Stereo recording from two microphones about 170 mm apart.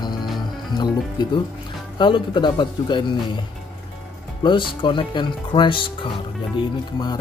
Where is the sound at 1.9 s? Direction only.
30° left (ahead or behind).